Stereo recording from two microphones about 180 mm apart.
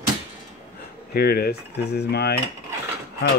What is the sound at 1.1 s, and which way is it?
Speech, 60° left (ahead or behind).